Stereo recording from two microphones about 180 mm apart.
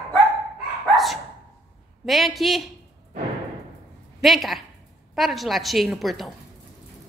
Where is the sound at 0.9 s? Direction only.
Centre (ahead or behind).